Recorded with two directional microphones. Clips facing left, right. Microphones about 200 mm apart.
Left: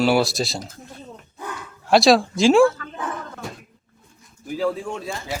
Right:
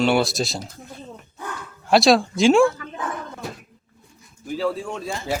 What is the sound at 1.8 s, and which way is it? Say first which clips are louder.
Speech: left 1 dB; centre (ahead or behind).